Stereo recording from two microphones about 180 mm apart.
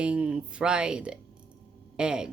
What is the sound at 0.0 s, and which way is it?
Speech, 5° right (ahead or behind).